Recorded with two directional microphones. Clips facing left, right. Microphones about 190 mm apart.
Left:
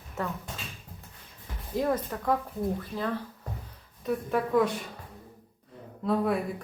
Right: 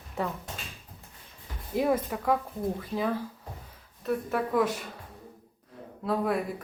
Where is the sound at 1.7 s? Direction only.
10° right (ahead or behind).